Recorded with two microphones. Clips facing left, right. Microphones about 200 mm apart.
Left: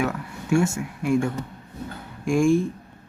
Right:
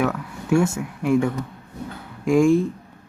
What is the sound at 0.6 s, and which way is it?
Speech, 60° right (ahead or behind).